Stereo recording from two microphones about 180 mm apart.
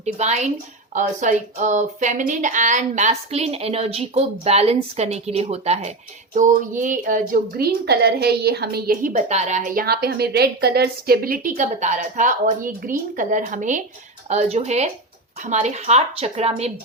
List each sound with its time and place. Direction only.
0.0 s a woman's voice: 40° right (ahead or behind)